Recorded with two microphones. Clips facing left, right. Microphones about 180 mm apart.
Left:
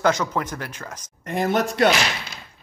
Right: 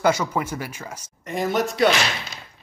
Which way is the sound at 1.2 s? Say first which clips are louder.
Left 1 dB; 55° left (ahead or behind).